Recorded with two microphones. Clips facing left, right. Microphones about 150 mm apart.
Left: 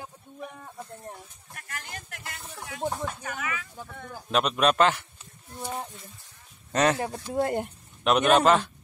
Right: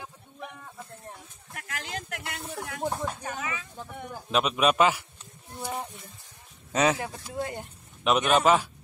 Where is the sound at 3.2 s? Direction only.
30° right (ahead or behind).